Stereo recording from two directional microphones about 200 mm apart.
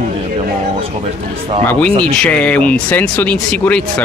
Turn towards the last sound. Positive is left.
turn(degrees=5)  # may be behind; listen again after turning